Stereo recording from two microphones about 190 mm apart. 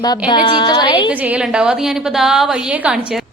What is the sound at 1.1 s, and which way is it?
A woman's voice, 10° right (ahead or behind).